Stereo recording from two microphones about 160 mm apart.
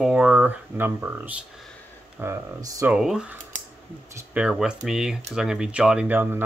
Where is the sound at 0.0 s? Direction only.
5° right (ahead or behind).